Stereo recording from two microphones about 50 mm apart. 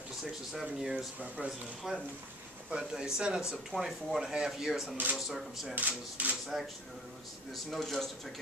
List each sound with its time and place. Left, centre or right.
0.2 s speech: centre
5.8 s speech: right
6.5 s speech: centre
7.5 s speech: centre